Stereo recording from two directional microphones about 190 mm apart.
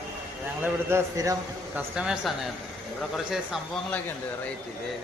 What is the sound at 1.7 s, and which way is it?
Speech, 5° right (ahead or behind).